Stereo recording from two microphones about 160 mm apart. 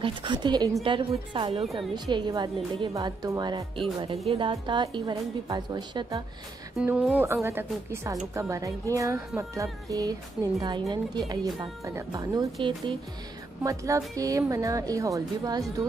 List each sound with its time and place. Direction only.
0.0 s a woman's voice: 30° right (ahead or behind)
6.8 s a woman's voice: 5° right (ahead or behind)
13.6 s a woman's voice: 20° right (ahead or behind)